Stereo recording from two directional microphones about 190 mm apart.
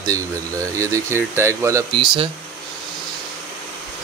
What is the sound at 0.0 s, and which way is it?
Speech, 15° right (ahead or behind).